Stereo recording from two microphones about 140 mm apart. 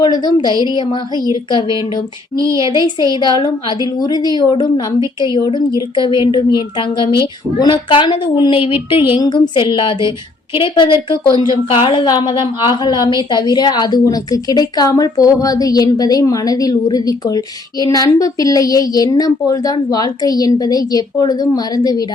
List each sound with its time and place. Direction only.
0.0 s a woman's voice: 30° left (ahead or behind)
2.3 s a sound: 25° right (ahead or behind)
2.7 s a woman's voice: 35° left (ahead or behind)